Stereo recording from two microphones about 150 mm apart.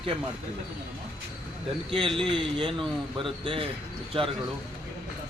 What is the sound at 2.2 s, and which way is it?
Speech, 35° right (ahead or behind).